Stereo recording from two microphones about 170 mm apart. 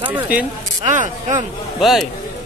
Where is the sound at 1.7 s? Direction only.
Centre (ahead or behind).